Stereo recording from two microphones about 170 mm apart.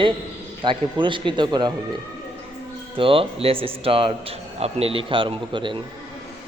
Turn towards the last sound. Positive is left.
turn(degrees=-30)  # may be behind; listen again after turning